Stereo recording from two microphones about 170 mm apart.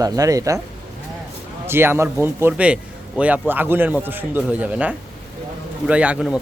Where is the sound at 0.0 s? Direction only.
20° right (ahead or behind).